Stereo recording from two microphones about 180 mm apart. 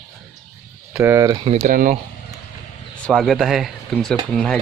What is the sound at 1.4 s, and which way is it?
Speech, 45° right (ahead or behind).